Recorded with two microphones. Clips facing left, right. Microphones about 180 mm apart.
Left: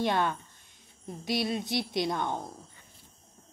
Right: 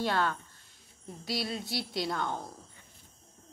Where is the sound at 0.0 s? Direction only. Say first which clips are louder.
Left 2 dB; 20° left (ahead or behind).